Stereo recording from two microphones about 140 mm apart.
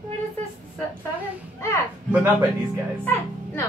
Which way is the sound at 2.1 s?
15° right (ahead or behind).